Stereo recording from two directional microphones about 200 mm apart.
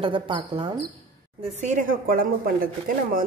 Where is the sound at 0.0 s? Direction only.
25° right (ahead or behind).